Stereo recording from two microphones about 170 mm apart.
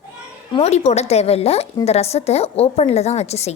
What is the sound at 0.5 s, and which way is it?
Speech, 40° left (ahead or behind).